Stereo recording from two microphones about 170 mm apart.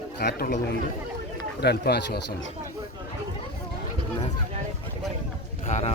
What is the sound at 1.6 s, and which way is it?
Speech, 75° left (ahead or behind).